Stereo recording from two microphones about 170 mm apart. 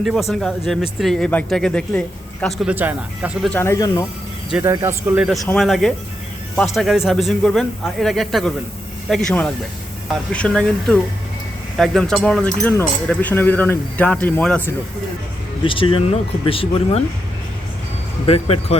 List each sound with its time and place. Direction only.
0.0 s speech: centre (ahead or behind)
2.6 s speech: 10° right (ahead or behind)
3.5 s speech: 15° left (ahead or behind)
4.7 s speech: 15° right (ahead or behind); by 14.7 s 10° left (ahead or behind)
15.6 s speech: 30° left (ahead or behind)
18.3 s speech: 35° left (ahead or behind)